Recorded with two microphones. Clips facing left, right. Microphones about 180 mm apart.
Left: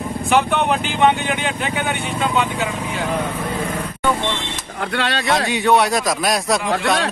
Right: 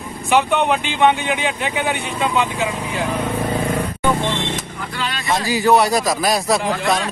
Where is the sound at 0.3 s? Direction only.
Centre (ahead or behind).